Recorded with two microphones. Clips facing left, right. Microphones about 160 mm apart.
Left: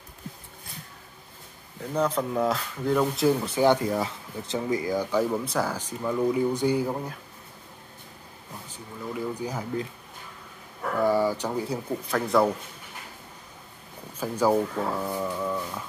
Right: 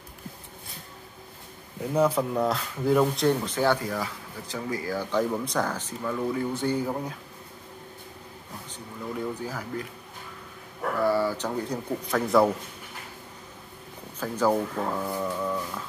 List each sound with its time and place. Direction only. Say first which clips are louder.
1.8 s speech: right 3 dB; 10° right (ahead or behind); by 3.7 s 10° left (ahead or behind)
3.7 s speech: left 4 dB; 25° left (ahead or behind)
8.6 s speech: even; 5° left (ahead or behind)
9.4 s speech: left 3 dB; 20° left (ahead or behind)
11.0 s speech: left 2 dB; 15° left (ahead or behind); by 12.5 s centre (ahead or behind)
14.2 s speech: left 1 dB; 10° left (ahead or behind)